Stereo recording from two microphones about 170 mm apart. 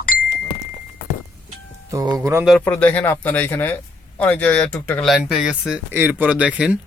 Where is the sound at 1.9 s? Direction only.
20° right (ahead or behind).